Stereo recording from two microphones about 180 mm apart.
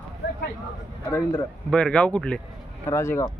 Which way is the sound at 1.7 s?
5° left (ahead or behind).